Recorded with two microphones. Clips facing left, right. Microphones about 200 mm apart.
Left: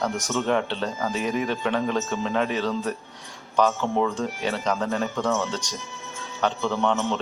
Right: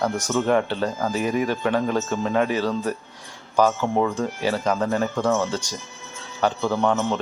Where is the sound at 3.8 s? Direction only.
15° right (ahead or behind).